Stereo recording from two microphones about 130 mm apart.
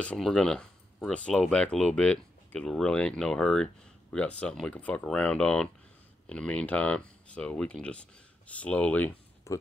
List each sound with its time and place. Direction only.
0.0 s speech: 5° left (ahead or behind)
9.5 s speech: 20° left (ahead or behind)